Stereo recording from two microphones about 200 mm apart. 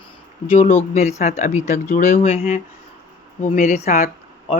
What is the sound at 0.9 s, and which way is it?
Speech, 35° left (ahead or behind).